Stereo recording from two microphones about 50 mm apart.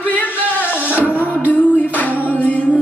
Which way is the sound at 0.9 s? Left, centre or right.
Right.